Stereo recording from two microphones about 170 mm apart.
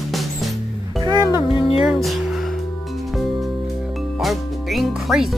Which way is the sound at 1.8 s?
Centre (ahead or behind).